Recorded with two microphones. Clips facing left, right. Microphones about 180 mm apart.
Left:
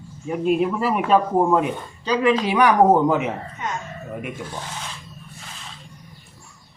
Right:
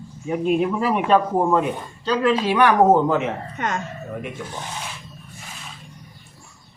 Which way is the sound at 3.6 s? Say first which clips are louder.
Right 6 dB; 65° right (ahead or behind).